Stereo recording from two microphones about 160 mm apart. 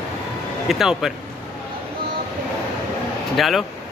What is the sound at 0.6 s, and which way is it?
Speech, centre (ahead or behind).